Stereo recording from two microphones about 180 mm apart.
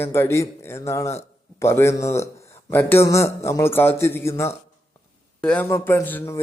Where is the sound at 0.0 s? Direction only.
15° left (ahead or behind).